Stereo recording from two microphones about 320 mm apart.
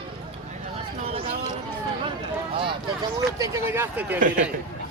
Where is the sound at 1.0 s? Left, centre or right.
Centre.